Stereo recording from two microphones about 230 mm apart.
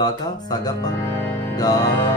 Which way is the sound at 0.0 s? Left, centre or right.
Centre.